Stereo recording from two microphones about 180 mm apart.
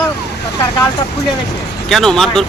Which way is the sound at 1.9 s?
Centre (ahead or behind).